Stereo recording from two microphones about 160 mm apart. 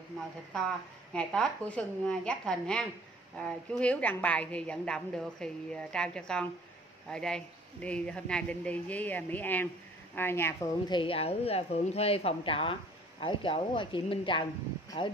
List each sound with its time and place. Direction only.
0.5 s a woman's voice: 5° left (ahead or behind)
10.9 s speech: 35° left (ahead or behind)